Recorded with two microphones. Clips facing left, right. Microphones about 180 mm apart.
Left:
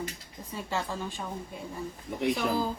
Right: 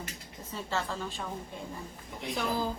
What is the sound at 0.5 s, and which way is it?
Speech, 15° left (ahead or behind).